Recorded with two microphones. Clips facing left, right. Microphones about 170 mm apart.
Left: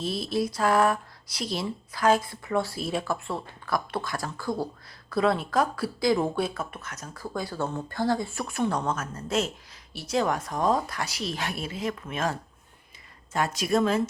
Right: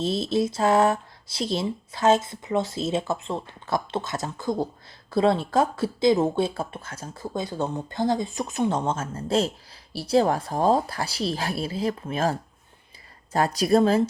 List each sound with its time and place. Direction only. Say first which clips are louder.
0.0 s speech: right 4 dB; 25° right (ahead or behind)